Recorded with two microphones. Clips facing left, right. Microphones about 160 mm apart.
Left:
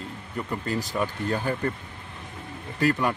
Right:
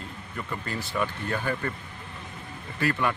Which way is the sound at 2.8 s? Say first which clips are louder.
Left 3 dB; 40° left (ahead or behind).